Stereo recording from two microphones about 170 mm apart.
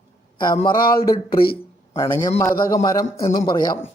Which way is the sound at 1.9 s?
15° left (ahead or behind).